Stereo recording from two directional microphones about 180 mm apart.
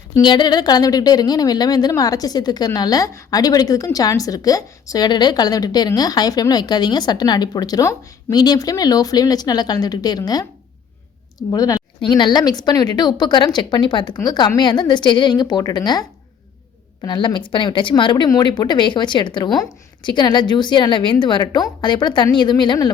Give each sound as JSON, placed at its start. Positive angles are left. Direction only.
{"t": 0.1, "sound": "a woman's voice", "side_deg": 25}